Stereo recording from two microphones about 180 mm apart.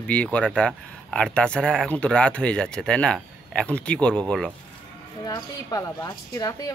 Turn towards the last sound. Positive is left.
turn(degrees=20)  # may be behind; listen again after turning